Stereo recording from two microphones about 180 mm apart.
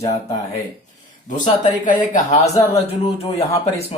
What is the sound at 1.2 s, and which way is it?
A man's voice, 45° left (ahead or behind).